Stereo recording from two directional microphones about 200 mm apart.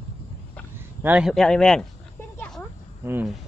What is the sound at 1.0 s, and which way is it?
Speech, 5° right (ahead or behind).